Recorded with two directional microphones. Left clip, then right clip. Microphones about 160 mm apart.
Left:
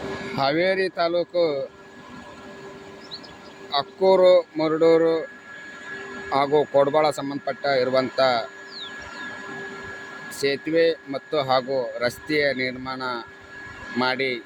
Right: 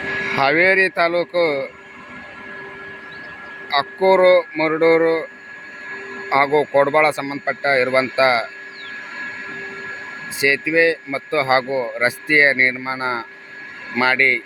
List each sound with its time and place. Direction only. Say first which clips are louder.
0.3 s speech: right 6 dB; centre (ahead or behind)
3.7 s speech: right 4 dB; centre (ahead or behind)
6.3 s speech: right 4 dB; 5° right (ahead or behind)
9.5 s a sound: right 5 dB; 35° left (ahead or behind)
10.3 s speech: right 6 dB; centre (ahead or behind)